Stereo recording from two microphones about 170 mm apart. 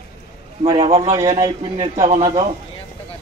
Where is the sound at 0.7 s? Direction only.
35° right (ahead or behind).